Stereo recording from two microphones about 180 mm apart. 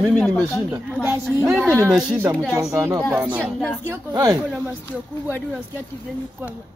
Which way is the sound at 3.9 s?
20° right (ahead or behind).